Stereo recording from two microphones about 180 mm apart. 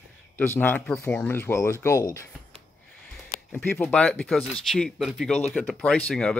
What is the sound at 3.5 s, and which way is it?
Speech, 10° left (ahead or behind).